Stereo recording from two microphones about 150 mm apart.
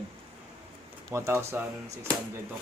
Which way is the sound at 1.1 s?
20° right (ahead or behind).